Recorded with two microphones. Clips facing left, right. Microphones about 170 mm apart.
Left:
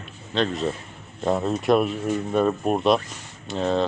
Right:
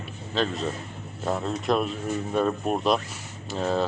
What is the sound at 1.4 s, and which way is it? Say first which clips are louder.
Speech: left 5 dB; 10° left (ahead or behind).